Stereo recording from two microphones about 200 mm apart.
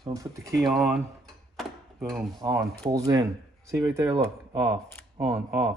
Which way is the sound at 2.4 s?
15° right (ahead or behind).